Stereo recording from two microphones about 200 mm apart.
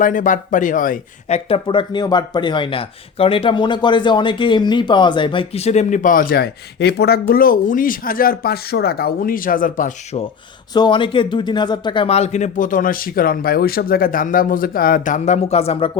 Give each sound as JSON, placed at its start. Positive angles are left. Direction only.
{"t": 0.0, "sound": "speech", "side_deg": 40}
{"t": 1.5, "sound": "speech", "side_deg": 25}
{"t": 10.8, "sound": "speech", "side_deg": 25}